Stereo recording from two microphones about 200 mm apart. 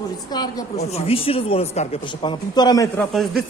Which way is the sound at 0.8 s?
30° left (ahead or behind).